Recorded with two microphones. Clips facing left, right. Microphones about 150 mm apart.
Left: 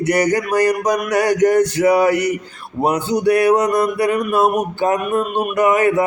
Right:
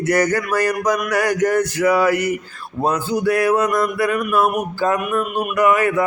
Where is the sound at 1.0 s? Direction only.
20° left (ahead or behind).